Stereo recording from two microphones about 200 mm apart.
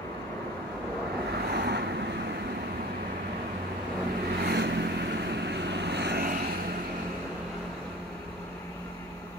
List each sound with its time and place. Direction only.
1.5 s waves: 55° right (ahead or behind)
4.4 s vehicle: 60° right (ahead or behind)